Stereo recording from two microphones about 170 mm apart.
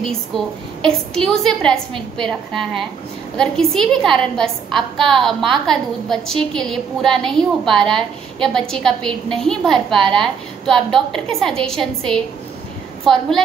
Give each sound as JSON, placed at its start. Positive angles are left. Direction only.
{"t": 0.8, "sound": "a woman's voice", "side_deg": 5}